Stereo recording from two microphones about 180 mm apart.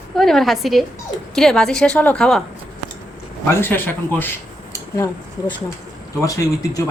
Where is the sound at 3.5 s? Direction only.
10° left (ahead or behind).